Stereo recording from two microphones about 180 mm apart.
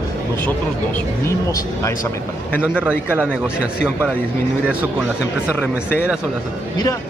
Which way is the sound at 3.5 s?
5° right (ahead or behind).